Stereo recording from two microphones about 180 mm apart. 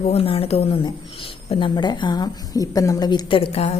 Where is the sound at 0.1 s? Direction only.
30° left (ahead or behind).